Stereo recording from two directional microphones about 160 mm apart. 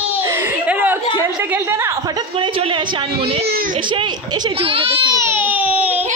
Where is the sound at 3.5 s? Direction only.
65° right (ahead or behind).